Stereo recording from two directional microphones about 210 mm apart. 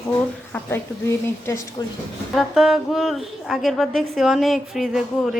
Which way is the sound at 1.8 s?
20° left (ahead or behind).